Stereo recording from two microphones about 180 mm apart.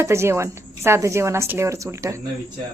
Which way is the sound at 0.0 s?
15° right (ahead or behind).